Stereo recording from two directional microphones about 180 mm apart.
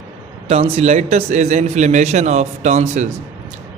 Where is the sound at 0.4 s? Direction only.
35° right (ahead or behind).